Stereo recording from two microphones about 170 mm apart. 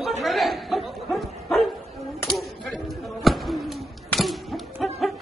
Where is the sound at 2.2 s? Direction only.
Centre (ahead or behind).